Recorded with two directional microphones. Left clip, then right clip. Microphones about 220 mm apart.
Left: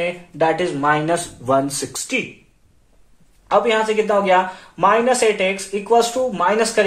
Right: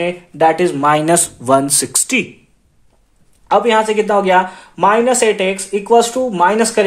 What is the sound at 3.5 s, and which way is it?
Speech, 45° right (ahead or behind).